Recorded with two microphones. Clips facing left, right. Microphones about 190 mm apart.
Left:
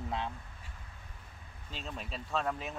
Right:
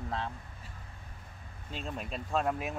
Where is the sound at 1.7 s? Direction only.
5° right (ahead or behind).